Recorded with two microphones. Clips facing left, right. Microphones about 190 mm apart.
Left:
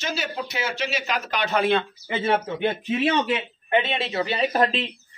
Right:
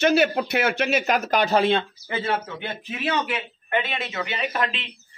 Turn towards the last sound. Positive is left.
turn(degrees=35)  # may be behind; listen again after turning